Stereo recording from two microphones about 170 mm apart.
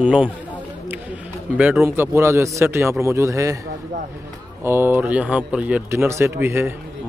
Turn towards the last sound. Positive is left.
turn(degrees=-15)  # may be behind; listen again after turning